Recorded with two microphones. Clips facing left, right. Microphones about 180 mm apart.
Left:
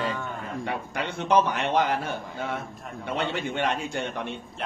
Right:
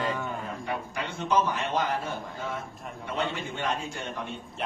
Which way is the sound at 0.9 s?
65° left (ahead or behind).